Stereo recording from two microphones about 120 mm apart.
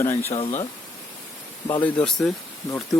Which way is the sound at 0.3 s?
55° left (ahead or behind).